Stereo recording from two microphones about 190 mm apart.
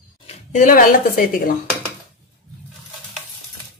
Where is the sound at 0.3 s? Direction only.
40° left (ahead or behind).